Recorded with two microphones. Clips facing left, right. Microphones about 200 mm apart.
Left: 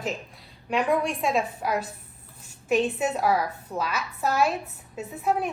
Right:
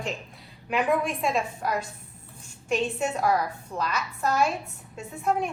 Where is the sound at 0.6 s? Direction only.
Centre (ahead or behind).